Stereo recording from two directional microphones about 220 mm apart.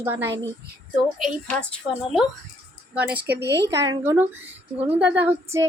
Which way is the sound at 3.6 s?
15° right (ahead or behind).